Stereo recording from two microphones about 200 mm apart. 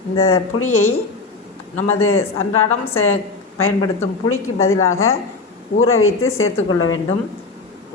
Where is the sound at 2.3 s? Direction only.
90° left.